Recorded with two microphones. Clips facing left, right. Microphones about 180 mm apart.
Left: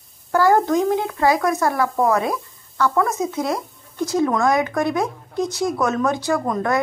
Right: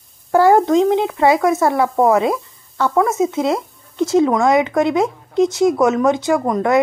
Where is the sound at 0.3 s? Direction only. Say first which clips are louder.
Right 4 dB; 20° right (ahead or behind).